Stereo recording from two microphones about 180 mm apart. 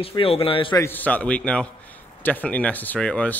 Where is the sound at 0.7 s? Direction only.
15° left (ahead or behind).